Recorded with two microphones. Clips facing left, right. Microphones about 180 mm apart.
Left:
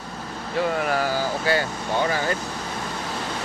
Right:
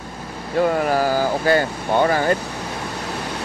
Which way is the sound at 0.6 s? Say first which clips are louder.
Right 5 dB; 50° right (ahead or behind).